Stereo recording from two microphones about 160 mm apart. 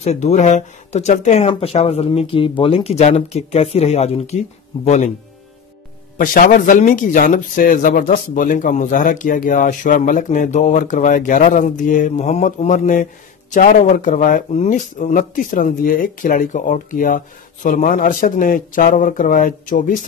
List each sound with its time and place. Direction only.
0.0 s speech: 45° left (ahead or behind)
6.1 s speech: 60° left (ahead or behind)